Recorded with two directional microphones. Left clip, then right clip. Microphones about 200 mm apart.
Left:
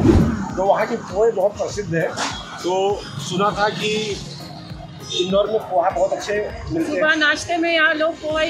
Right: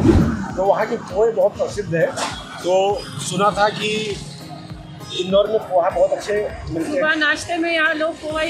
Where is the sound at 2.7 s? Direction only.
30° right (ahead or behind).